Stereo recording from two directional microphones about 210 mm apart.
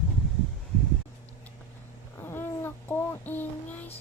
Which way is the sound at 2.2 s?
10° left (ahead or behind).